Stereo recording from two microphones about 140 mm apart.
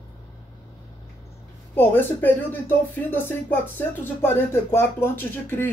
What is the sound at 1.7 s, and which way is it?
Speech, 15° left (ahead or behind).